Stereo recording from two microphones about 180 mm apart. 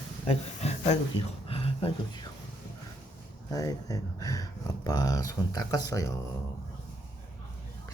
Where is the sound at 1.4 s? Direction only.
35° left (ahead or behind).